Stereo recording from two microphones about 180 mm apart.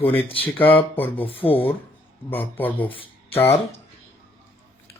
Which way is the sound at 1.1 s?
30° left (ahead or behind).